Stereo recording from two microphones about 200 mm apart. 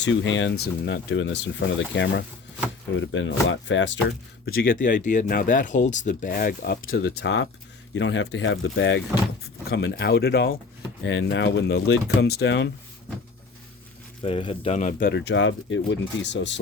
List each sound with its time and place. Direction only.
0.0 s speech: 65° left (ahead or behind)
4.4 s speech: 45° left (ahead or behind); by 9.0 s 65° left (ahead or behind)
9.4 s speech: 55° left (ahead or behind)
11.0 s speech: 60° left (ahead or behind)
14.2 s speech: 25° left (ahead or behind); by 16.6 s 65° left (ahead or behind)